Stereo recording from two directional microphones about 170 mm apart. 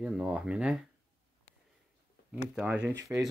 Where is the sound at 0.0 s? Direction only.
5° right (ahead or behind).